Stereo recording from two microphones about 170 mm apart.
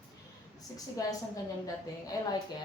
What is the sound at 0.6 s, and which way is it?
Speech, 20° left (ahead or behind).